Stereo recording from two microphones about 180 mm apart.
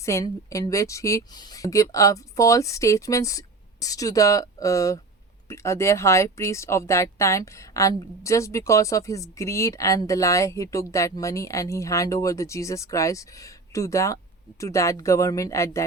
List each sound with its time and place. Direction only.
0.0 s speech: 15° left (ahead or behind)